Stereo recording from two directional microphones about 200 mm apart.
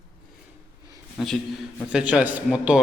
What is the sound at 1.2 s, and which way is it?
A man's voice, centre (ahead or behind).